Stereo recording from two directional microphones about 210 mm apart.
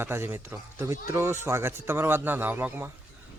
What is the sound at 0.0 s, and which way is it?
A man's voice, 10° right (ahead or behind).